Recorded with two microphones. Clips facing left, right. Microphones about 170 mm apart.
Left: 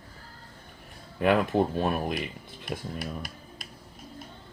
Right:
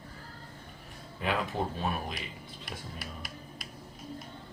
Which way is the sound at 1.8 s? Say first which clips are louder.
Left 7 dB; 50° left (ahead or behind).